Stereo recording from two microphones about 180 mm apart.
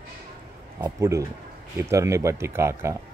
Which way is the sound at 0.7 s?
15° right (ahead or behind).